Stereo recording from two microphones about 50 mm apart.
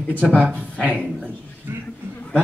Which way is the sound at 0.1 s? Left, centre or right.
Left.